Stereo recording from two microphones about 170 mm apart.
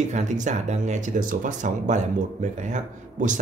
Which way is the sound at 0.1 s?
45° right (ahead or behind).